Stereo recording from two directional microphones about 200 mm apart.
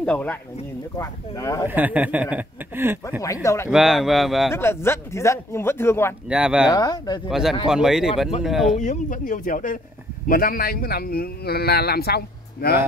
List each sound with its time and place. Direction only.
0.0 s speech: 5° left (ahead or behind)
1.7 s speech: 10° right (ahead or behind)
3.4 s speech: 15° left (ahead or behind)
3.7 s speech: centre (ahead or behind)
4.5 s speech: 10° left (ahead or behind)
6.2 s speech: 5° right (ahead or behind)
6.7 s speech: 20° left (ahead or behind)
7.2 s speech: centre (ahead or behind)
8.7 s speech: 40° left (ahead or behind)